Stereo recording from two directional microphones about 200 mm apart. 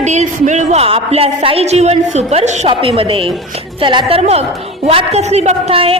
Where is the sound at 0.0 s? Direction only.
35° right (ahead or behind).